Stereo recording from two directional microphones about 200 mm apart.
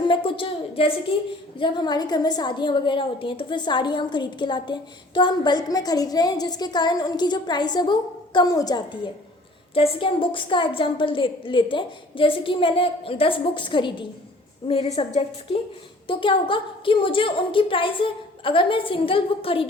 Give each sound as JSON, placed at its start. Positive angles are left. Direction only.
{"t": 0.1, "sound": "a woman's voice", "side_deg": 25}